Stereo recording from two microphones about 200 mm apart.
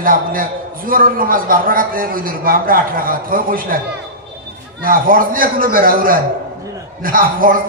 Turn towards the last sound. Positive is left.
turn(degrees=-45)  # may be behind; listen again after turning